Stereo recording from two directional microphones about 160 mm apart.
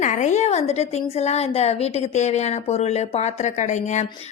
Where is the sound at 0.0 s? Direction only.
50° left (ahead or behind).